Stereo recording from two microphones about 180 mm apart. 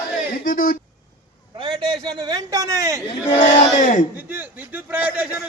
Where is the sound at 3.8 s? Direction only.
45° left (ahead or behind).